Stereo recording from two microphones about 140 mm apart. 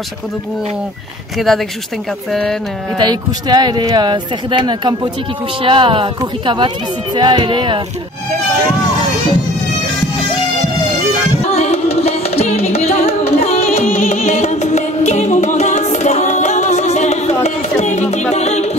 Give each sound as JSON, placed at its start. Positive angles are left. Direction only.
{"t": 1.5, "sound": "speech", "side_deg": 0}
{"t": 3.0, "sound": "speech", "side_deg": -30}
{"t": 11.4, "sound": "music", "side_deg": 50}